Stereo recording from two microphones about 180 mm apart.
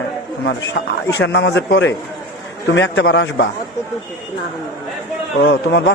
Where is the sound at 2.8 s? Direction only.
90° left.